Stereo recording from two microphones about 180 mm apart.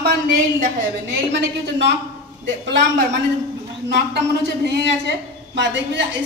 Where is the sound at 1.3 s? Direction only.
80° right.